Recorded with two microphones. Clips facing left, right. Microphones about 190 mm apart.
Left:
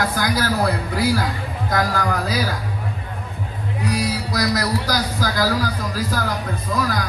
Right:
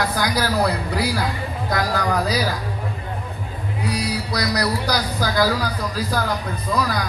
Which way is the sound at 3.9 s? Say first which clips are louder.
Left 2 dB; 45° left (ahead or behind).